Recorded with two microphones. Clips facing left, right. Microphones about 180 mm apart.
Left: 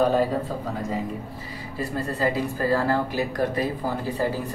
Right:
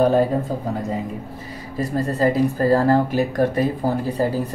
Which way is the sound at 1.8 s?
40° right (ahead or behind).